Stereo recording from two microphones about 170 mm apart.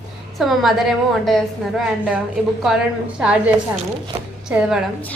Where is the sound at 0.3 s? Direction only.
Centre (ahead or behind).